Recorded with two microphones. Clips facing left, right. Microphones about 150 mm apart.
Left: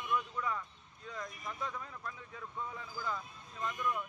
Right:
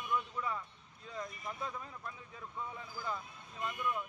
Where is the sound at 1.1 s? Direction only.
30° right (ahead or behind).